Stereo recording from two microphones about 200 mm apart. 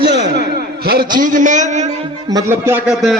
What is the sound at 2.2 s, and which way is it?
Speech, 15° right (ahead or behind).